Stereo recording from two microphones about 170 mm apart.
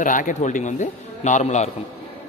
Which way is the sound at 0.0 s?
50° left (ahead or behind).